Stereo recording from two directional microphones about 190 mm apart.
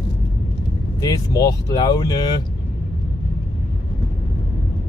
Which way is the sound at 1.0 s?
20° left (ahead or behind).